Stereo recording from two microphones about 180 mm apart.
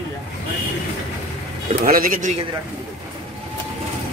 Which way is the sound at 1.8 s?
50° right (ahead or behind).